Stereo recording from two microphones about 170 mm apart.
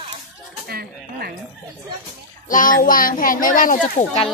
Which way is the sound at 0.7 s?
65° right (ahead or behind).